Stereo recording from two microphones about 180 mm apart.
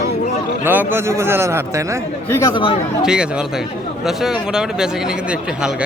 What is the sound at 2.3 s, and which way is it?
Speech, 20° left (ahead or behind).